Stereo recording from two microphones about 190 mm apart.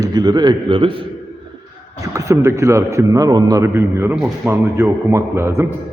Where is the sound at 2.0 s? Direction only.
15° right (ahead or behind).